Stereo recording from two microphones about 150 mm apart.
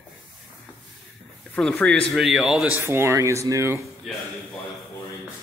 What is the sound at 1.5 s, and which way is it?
Speech, 10° left (ahead or behind).